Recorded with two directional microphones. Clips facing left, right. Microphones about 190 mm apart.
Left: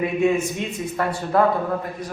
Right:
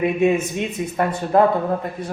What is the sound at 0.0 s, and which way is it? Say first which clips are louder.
A man's voice: right 2 dB; 20° right (ahead or behind).